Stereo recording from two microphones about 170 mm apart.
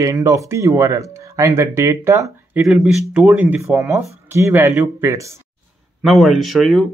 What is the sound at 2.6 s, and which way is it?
Speech, centre (ahead or behind).